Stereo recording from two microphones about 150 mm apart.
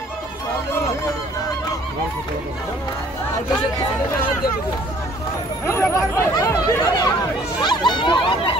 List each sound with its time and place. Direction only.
5.7 s speech: 15° left (ahead or behind); by 8.5 s 35° left (ahead or behind)